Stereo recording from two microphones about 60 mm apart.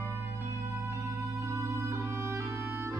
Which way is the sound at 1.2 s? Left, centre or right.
Right.